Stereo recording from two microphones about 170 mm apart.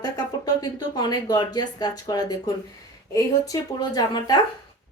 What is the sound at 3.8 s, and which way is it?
Speech, 25° left (ahead or behind).